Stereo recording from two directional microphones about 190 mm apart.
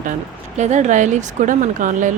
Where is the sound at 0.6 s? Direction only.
40° right (ahead or behind).